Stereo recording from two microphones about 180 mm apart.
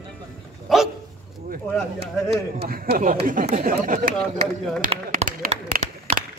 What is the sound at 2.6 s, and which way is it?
A man's voice, 55° right (ahead or behind).